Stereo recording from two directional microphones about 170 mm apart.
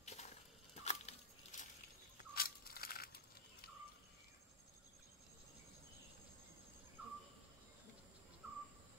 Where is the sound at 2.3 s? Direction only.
60° left (ahead or behind).